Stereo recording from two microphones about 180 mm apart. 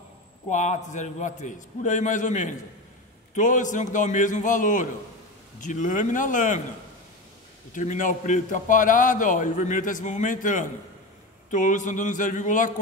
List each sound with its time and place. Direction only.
0.5 s a man's voice: 45° left (ahead or behind)
7.7 s a man's voice: 45° left (ahead or behind)